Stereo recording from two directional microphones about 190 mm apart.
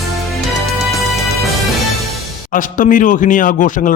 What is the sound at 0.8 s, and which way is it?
Music, centre (ahead or behind).